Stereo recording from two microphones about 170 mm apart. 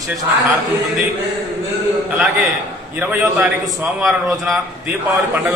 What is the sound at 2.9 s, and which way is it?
A man's voice, 10° right (ahead or behind).